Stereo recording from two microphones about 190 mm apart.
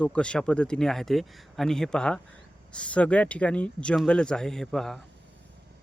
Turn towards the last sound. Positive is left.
turn(degrees=0)  # may be behind; listen again after turning